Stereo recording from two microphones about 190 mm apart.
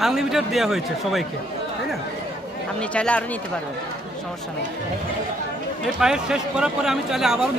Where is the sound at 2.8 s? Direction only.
5° left (ahead or behind).